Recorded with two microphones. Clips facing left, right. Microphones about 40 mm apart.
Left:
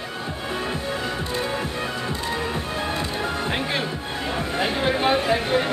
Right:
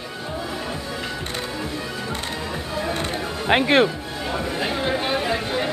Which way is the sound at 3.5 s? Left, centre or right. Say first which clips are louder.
Right 8 dB; right.